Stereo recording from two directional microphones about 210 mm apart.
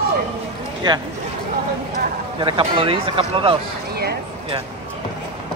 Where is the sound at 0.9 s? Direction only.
20° right (ahead or behind).